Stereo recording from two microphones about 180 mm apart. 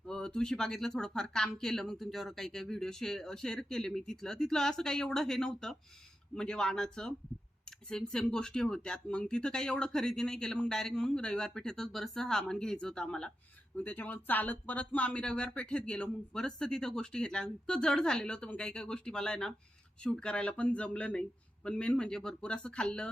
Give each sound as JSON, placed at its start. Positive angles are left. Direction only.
{"t": 0.1, "sound": "speech", "side_deg": 5}